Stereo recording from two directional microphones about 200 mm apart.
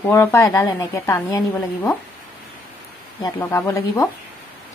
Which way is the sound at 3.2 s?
15° left (ahead or behind).